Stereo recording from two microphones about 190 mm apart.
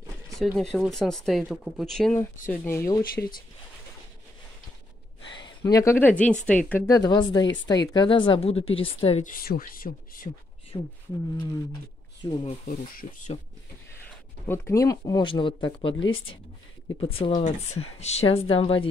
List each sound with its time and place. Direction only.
0.6 s speech: centre (ahead or behind)
3.0 s speech: 50° left (ahead or behind)
5.3 s speech: 20° left (ahead or behind); by 6.8 s 5° left (ahead or behind)
6.9 s speech: 20° left (ahead or behind)
9.2 s speech: 50° left (ahead or behind)
10.7 s speech: 20° left (ahead or behind)
12.2 s speech: 30° left (ahead or behind)
14.4 s speech: 15° left (ahead or behind)
17.0 s speech: 30° left (ahead or behind)